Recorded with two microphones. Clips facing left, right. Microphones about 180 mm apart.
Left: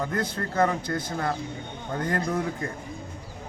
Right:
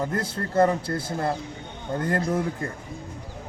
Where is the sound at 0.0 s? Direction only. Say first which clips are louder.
Right 1 dB; 30° right (ahead or behind).